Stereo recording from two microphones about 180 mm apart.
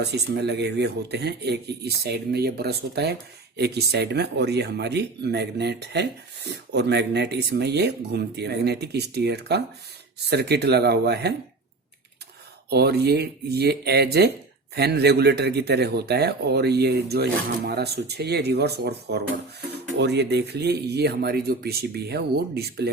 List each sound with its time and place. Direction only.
0.0 s speech: 65° right (ahead or behind)
12.7 s speech: 65° right (ahead or behind)